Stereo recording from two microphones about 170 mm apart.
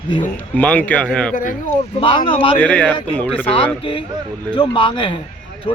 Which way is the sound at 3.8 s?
30° left (ahead or behind).